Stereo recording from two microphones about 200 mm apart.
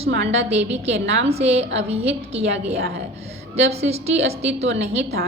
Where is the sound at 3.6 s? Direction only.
30° right (ahead or behind).